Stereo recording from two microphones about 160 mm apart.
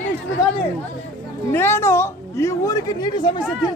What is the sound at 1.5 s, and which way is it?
A woman's voice, 15° left (ahead or behind).